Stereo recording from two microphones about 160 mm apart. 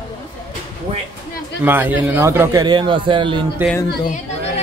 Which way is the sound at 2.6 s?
30° right (ahead or behind).